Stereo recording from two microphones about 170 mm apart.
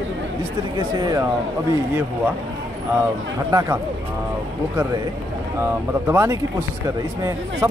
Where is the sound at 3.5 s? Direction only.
20° right (ahead or behind).